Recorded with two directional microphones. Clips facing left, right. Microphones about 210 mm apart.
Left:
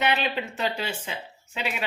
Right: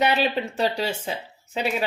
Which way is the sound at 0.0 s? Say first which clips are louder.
Right 4 dB; 35° right (ahead or behind).